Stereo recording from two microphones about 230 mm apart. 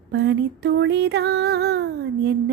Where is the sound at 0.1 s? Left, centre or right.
Right.